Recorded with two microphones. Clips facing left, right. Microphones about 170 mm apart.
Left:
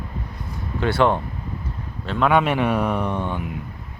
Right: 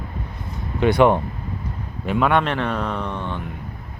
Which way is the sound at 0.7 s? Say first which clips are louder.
Right 4 dB; 15° right (ahead or behind).